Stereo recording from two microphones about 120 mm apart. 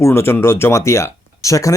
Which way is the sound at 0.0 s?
20° left (ahead or behind).